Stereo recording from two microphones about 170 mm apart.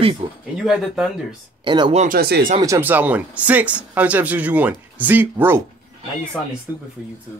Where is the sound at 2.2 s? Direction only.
60° right (ahead or behind).